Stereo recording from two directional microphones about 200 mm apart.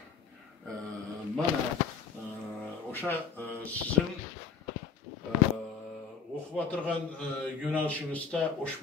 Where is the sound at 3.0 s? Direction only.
10° left (ahead or behind).